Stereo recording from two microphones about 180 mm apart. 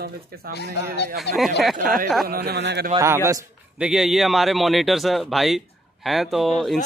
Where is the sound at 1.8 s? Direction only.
50° right (ahead or behind).